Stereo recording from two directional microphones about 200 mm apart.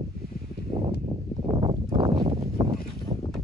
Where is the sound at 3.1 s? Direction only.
30° right (ahead or behind).